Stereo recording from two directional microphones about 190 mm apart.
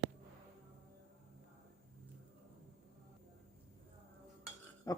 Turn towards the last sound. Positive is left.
turn(degrees=15)  # may be behind; listen again after turning